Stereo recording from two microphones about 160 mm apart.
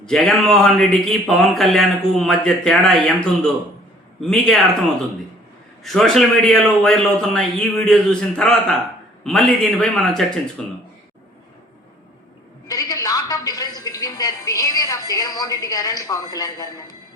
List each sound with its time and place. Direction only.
0.0 s a man's voice: 5° left (ahead or behind)
5.8 s a man's voice: centre (ahead or behind)
12.6 s a woman's voice: 25° left (ahead or behind)